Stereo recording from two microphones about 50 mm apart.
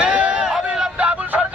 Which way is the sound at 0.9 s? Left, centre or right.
Right.